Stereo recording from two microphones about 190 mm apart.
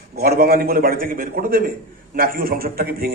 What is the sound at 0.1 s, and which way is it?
Speech, 55° right (ahead or behind).